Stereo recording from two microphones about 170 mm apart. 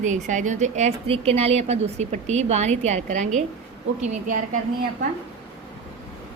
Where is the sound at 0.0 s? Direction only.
45° right (ahead or behind).